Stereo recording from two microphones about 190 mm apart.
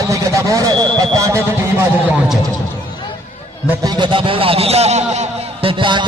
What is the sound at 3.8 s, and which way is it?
A man's voice, 25° right (ahead or behind).